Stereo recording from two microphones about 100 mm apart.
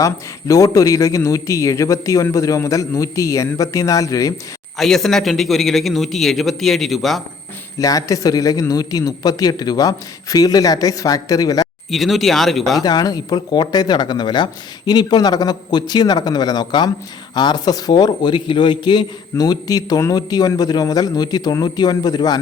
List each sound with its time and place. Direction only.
0.0 s a man's voice: 35° left (ahead or behind)
4.8 s a man's voice: 5° left (ahead or behind)
7.8 s a man's voice: 35° left (ahead or behind)
11.9 s a man's voice: centre (ahead or behind)
12.8 s a man's voice: 40° left (ahead or behind)